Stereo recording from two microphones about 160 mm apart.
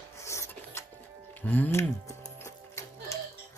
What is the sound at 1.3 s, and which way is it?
Music, 10° left (ahead or behind).